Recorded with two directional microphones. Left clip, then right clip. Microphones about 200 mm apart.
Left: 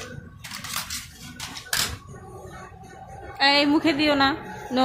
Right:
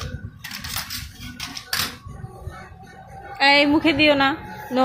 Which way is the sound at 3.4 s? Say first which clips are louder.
Right 3 dB; 10° right (ahead or behind).